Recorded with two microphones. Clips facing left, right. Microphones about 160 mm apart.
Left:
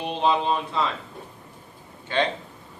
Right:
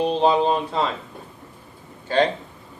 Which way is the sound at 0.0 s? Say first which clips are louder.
Right 5 dB; 35° right (ahead or behind).